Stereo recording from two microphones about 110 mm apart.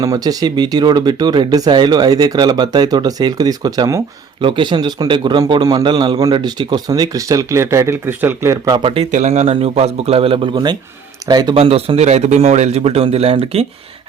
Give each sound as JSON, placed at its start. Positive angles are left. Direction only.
{"t": 0.0, "sound": "speech", "side_deg": -35}
{"t": 4.4, "sound": "a man's voice", "side_deg": -50}
{"t": 8.8, "sound": "a man's voice", "side_deg": -60}
{"t": 10.5, "sound": "speech", "side_deg": -40}
{"t": 11.5, "sound": "a man's voice", "side_deg": -60}